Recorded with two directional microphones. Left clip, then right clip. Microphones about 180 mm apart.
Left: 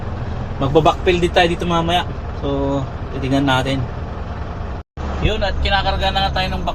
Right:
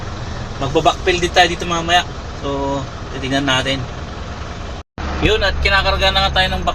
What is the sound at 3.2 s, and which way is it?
Speech, 5° left (ahead or behind).